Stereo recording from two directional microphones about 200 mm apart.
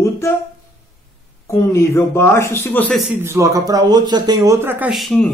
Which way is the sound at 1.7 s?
10° left (ahead or behind).